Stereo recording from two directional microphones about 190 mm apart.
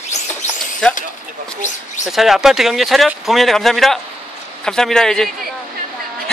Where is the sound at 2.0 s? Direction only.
Centre (ahead or behind).